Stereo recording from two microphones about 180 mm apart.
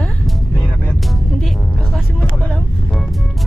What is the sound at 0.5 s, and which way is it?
Music, 10° left (ahead or behind).